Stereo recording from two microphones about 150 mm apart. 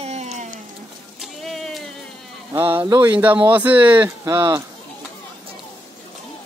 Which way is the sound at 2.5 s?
15° right (ahead or behind).